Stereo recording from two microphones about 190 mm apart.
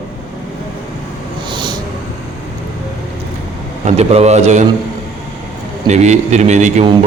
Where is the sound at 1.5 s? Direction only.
25° right (ahead or behind).